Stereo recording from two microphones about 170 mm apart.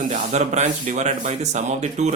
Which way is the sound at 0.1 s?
45° right (ahead or behind).